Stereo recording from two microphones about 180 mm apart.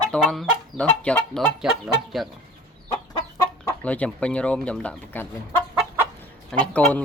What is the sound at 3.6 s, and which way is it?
Speech, 15° left (ahead or behind).